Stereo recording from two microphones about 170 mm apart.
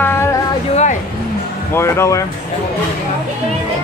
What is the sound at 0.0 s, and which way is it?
Music, 15° left (ahead or behind).